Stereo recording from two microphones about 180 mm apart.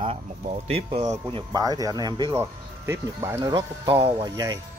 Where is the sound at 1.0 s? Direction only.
20° right (ahead or behind).